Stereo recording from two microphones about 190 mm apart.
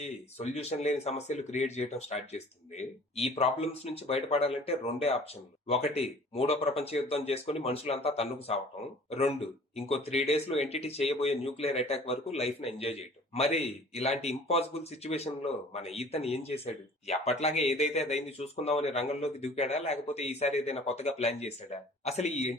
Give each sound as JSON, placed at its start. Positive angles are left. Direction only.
{"t": 0.0, "sound": "speech", "side_deg": 35}